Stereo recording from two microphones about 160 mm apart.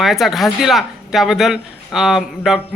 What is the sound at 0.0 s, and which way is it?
A man's voice, centre (ahead or behind).